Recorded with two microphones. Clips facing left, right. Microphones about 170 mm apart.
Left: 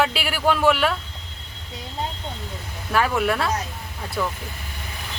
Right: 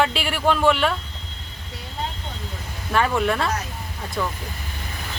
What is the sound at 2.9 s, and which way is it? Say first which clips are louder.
Speech: even; 5° left (ahead or behind).